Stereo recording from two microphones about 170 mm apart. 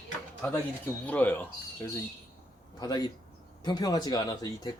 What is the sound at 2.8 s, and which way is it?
Speech, 20° left (ahead or behind).